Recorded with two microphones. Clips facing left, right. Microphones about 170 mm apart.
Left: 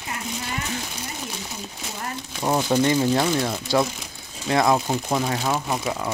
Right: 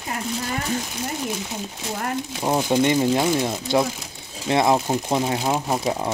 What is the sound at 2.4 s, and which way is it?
Speech, 15° right (ahead or behind).